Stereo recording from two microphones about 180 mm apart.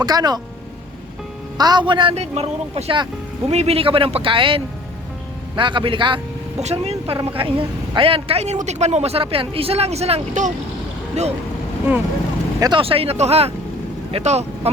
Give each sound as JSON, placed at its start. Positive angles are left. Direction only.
{"t": 0.0, "sound": "speech", "side_deg": -20}
{"t": 1.5, "sound": "speech", "side_deg": -20}
{"t": 12.5, "sound": "speech", "side_deg": -25}